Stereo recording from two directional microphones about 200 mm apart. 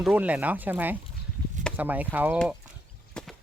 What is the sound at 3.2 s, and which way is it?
Horse, 5° left (ahead or behind).